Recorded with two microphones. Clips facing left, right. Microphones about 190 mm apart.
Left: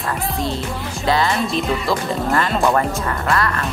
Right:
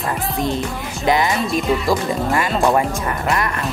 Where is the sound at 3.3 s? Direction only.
20° right (ahead or behind).